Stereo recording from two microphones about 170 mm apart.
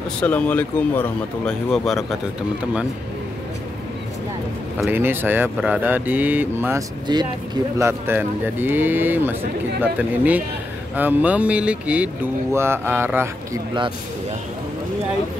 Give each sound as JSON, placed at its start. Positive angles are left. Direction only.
{"t": 0.2, "sound": "speech", "side_deg": 10}
{"t": 4.9, "sound": "speech", "side_deg": -10}
{"t": 7.1, "sound": "speech", "side_deg": -25}
{"t": 7.8, "sound": "speech", "side_deg": -10}